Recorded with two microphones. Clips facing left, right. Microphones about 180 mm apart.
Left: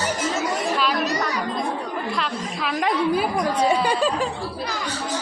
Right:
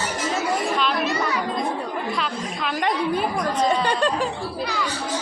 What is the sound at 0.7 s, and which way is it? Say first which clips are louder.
Chatter: even; 5° left (ahead or behind).